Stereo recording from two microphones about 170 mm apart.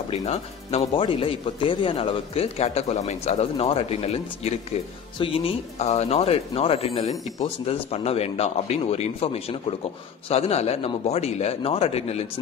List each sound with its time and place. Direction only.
0.1 s speech: 40° left (ahead or behind)